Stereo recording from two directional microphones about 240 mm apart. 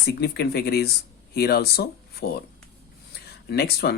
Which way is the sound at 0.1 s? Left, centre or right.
Left.